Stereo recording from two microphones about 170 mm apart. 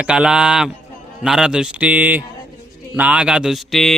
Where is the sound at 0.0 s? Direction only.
5° right (ahead or behind).